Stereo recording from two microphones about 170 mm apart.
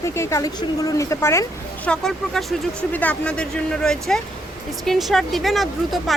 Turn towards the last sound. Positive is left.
turn(degrees=0)  # may be behind; listen again after turning